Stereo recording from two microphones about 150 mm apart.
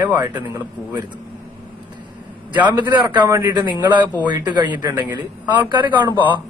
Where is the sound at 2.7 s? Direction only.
30° right (ahead or behind).